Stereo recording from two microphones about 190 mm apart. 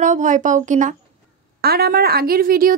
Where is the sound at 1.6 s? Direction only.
55° right (ahead or behind).